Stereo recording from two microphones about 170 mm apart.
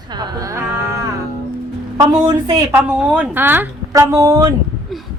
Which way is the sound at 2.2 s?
25° right (ahead or behind).